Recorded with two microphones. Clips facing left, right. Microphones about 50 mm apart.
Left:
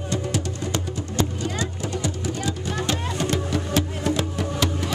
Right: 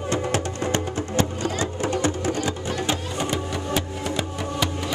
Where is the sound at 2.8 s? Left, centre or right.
Centre.